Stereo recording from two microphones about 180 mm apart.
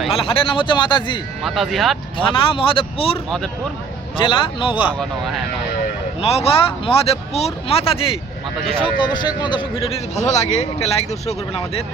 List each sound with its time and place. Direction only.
0.1 s speech: 30° left (ahead or behind)
1.5 s speech: centre (ahead or behind)
2.1 s speech: 30° left (ahead or behind)
3.2 s speech: 5° left (ahead or behind)
4.2 s speech: 30° left (ahead or behind)
4.9 s speech: centre (ahead or behind)
6.2 s a man's voice: 35° left (ahead or behind)